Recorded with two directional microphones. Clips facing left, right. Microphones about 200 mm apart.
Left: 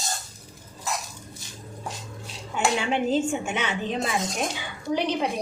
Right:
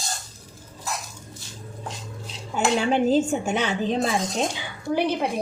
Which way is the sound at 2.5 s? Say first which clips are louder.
Right 3 dB; 40° right (ahead or behind).